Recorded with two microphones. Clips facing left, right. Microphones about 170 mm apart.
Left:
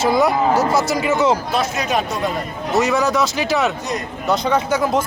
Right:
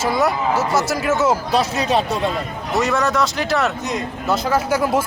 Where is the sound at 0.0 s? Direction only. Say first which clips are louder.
Left 3 dB; centre (ahead or behind).